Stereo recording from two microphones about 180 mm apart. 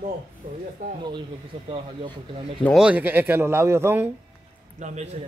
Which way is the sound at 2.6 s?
Centre (ahead or behind).